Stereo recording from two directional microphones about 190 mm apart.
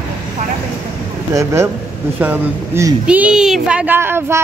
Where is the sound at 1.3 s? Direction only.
15° right (ahead or behind).